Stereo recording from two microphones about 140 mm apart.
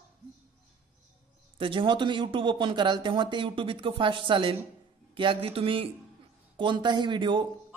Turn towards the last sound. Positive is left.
turn(degrees=-35)  # may be behind; listen again after turning